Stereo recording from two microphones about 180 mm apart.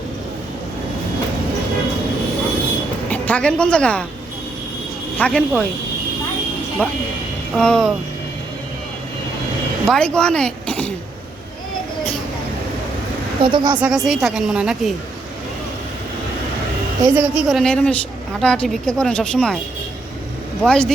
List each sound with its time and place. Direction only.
3.1 s a woman's voice: 10° left (ahead or behind)
5.1 s speech: 5° left (ahead or behind)
6.8 s a woman's voice: 10° left (ahead or behind)
9.8 s speech: 5° left (ahead or behind)
13.4 s a woman's voice: 25° right (ahead or behind)
13.7 s a woman's voice: 5° right (ahead or behind)
17.0 s a woman's voice: 5° right (ahead or behind)
20.6 s a woman's voice: 5° left (ahead or behind)